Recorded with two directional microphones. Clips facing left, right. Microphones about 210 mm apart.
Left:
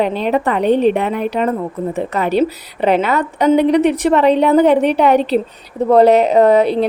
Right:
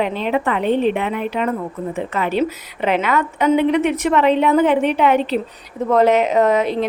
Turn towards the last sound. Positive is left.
turn(degrees=35)  # may be behind; listen again after turning